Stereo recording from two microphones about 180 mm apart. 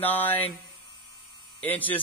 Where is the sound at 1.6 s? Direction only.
10° left (ahead or behind).